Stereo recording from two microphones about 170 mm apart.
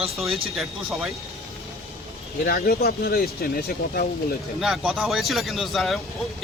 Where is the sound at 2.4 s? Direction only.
65° left (ahead or behind).